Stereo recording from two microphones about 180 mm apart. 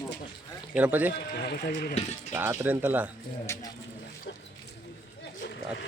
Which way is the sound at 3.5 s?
15° left (ahead or behind).